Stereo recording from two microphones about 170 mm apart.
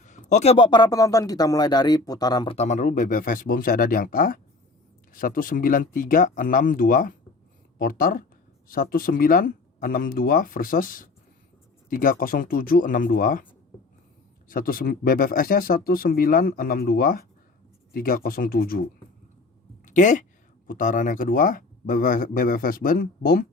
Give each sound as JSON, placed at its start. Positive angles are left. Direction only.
{"t": 0.0, "sound": "a man's voice", "side_deg": 45}
{"t": 2.6, "sound": "speech", "side_deg": 45}
{"t": 19.8, "sound": "a sound", "side_deg": 50}
{"t": 20.7, "sound": "speech", "side_deg": 50}